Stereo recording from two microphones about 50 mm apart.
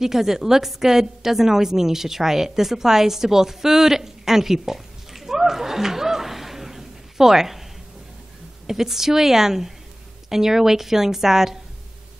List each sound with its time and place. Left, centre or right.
0.0 s a woman's voice: centre
8.6 s a woman's voice: centre